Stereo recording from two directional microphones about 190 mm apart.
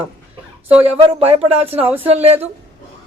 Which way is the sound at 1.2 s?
30° right (ahead or behind).